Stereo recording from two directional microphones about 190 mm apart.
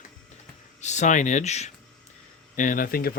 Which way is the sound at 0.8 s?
40° left (ahead or behind).